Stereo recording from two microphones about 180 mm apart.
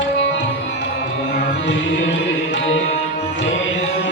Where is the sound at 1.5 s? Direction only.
90° left.